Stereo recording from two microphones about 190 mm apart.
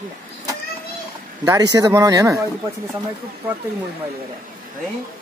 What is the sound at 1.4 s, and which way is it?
Speech, 20° right (ahead or behind).